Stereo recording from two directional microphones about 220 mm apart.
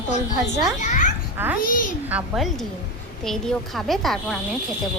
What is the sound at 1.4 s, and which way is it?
A woman's voice, 10° right (ahead or behind).